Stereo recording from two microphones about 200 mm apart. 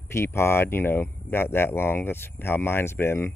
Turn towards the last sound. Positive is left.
turn(degrees=10)  # may be behind; listen again after turning